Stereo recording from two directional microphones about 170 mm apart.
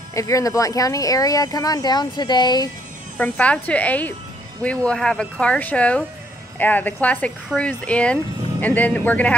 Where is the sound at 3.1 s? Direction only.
10° left (ahead or behind).